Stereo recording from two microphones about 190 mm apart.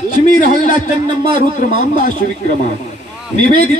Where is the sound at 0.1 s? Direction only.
45° left (ahead or behind).